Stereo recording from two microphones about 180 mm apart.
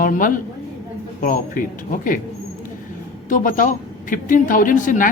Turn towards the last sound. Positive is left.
turn(degrees=45)  # may be behind; listen again after turning